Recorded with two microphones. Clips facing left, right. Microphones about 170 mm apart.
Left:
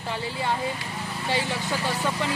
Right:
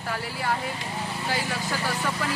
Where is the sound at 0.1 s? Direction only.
25° left (ahead or behind).